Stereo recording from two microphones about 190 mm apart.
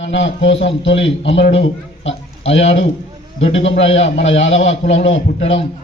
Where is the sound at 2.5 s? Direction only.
35° left (ahead or behind).